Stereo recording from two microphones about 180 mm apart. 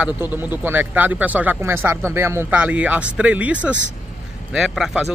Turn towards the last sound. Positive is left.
turn(degrees=-5)  # may be behind; listen again after turning